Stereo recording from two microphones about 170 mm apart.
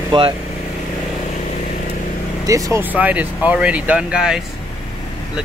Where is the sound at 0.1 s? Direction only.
30° right (ahead or behind).